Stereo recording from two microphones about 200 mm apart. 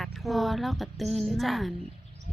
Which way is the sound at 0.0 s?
Centre (ahead or behind).